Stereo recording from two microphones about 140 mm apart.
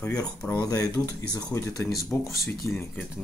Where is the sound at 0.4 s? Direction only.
10° left (ahead or behind).